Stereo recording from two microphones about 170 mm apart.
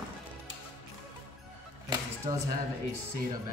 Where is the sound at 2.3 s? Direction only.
25° right (ahead or behind).